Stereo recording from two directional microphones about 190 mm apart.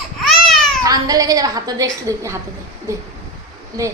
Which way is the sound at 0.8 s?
20° right (ahead or behind).